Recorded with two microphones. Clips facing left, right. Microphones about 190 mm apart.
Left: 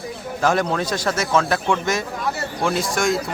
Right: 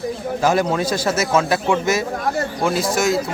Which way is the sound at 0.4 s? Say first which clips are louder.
Right 2 dB; 5° right (ahead or behind).